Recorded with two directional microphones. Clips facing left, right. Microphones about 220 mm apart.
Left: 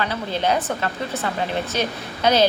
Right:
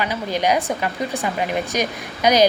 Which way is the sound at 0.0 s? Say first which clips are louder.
Right 2 dB; 15° right (ahead or behind).